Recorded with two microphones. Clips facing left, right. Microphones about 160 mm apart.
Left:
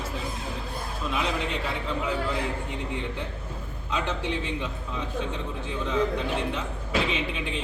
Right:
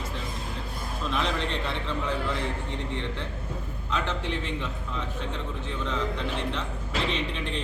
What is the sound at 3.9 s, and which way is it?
Speech, 15° left (ahead or behind).